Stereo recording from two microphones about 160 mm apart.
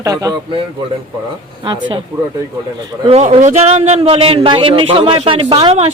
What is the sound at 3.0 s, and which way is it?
Speech, 40° right (ahead or behind).